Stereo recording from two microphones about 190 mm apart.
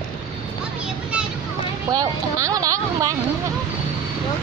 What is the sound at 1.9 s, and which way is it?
Speech, 20° right (ahead or behind).